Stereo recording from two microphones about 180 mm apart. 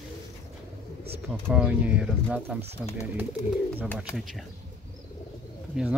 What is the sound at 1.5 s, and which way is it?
Speech, 5° right (ahead or behind).